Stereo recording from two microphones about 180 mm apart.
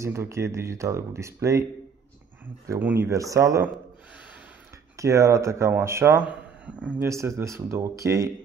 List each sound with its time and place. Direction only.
0.0 s speech: 15° right (ahead or behind)
4.9 s speech: 15° right (ahead or behind)